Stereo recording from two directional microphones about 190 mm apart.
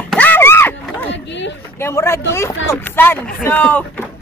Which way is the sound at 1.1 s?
70° left (ahead or behind).